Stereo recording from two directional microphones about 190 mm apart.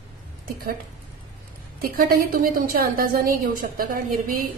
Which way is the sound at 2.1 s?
50° right (ahead or behind).